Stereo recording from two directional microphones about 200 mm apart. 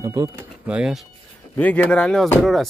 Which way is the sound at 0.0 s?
15° right (ahead or behind).